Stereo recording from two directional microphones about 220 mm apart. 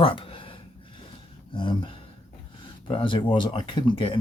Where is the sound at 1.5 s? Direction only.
20° left (ahead or behind).